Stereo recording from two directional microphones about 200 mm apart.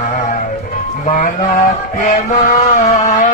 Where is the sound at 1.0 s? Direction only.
40° left (ahead or behind).